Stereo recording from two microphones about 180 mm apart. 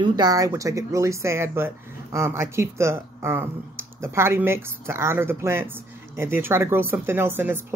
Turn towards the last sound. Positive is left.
turn(degrees=-10)  # may be behind; listen again after turning